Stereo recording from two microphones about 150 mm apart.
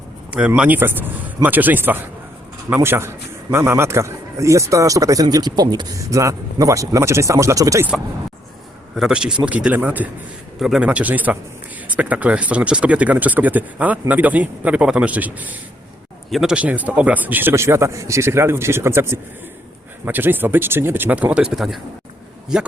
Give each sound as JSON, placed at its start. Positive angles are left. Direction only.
{"t": 0.3, "sound": "a man's voice", "side_deg": -10}
{"t": 9.0, "sound": "speech", "side_deg": -5}